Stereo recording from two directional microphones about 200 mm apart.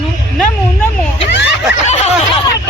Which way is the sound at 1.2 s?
60° left (ahead or behind).